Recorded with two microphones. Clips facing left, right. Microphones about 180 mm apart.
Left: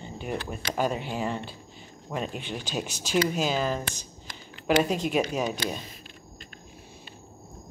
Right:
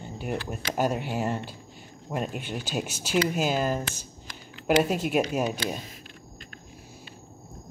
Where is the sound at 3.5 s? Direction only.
50° right (ahead or behind).